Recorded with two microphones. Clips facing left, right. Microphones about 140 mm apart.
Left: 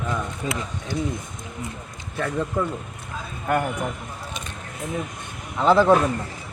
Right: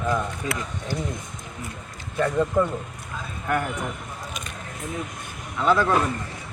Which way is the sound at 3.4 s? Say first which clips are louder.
Left 3 dB; 15° left (ahead or behind).